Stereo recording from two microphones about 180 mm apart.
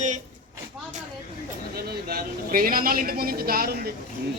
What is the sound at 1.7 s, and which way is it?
A man's voice, 60° right (ahead or behind).